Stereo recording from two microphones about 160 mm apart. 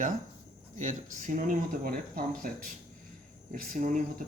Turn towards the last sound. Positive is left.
turn(degrees=-55)  # may be behind; listen again after turning